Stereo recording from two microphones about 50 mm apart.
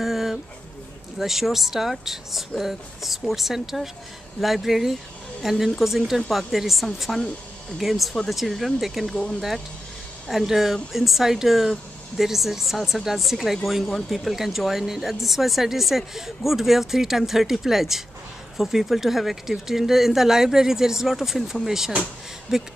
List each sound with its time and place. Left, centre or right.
0.0 s a sound: centre
1.1 s speech: centre
9.1 s speech: centre
10.2 s speech: centre